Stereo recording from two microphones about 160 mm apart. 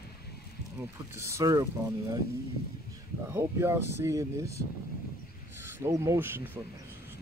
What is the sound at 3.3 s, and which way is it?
Speech, 15° right (ahead or behind).